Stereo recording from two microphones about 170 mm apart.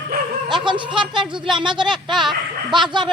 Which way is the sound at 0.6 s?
30° right (ahead or behind).